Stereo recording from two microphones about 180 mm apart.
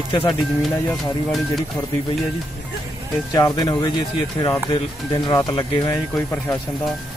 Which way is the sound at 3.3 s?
20° left (ahead or behind).